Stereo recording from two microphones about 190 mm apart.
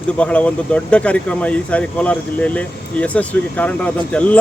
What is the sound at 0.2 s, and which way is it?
Speech, 5° left (ahead or behind).